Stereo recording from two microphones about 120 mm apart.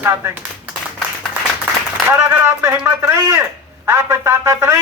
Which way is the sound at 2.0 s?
15° right (ahead or behind).